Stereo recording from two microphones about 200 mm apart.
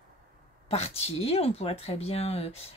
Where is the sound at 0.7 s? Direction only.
30° left (ahead or behind).